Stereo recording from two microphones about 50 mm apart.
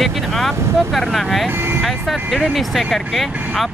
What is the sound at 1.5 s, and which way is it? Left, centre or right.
Speech, right.